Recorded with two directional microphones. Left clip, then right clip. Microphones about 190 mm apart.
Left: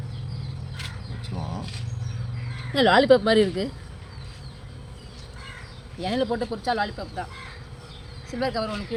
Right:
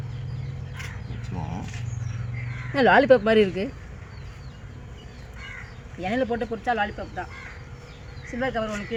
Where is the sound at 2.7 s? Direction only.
5° left (ahead or behind).